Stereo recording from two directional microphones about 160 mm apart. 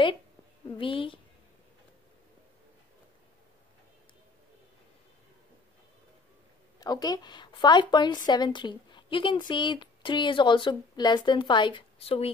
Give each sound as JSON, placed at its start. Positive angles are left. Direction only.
{"t": 0.7, "sound": "a woman's voice", "side_deg": 30}
{"t": 6.8, "sound": "a woman's voice", "side_deg": 25}